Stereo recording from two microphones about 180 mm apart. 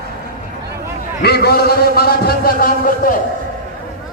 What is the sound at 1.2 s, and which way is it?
A man's voice, 60° left (ahead or behind).